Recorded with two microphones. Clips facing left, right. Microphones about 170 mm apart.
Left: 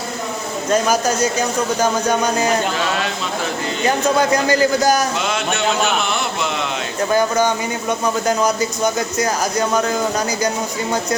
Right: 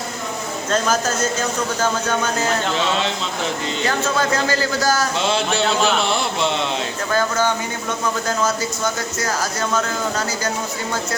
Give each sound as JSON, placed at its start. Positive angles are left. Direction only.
{"t": 0.7, "sound": "a man's voice", "side_deg": 10}
{"t": 3.8, "sound": "a man's voice", "side_deg": 15}
{"t": 5.2, "sound": "mantra", "side_deg": -30}
{"t": 7.1, "sound": "a man's voice", "side_deg": 15}